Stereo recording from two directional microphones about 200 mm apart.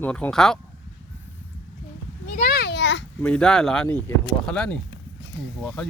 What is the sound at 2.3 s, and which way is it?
Children playing, 50° left (ahead or behind).